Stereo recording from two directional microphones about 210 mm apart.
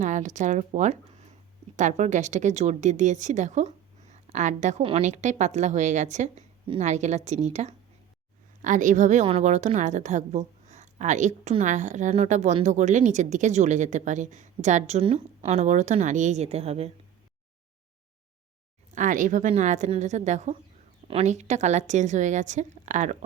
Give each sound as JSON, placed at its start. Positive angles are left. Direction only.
{"t": 0.0, "sound": "a woman's voice", "side_deg": -35}
{"t": 18.9, "sound": "a woman's voice", "side_deg": -40}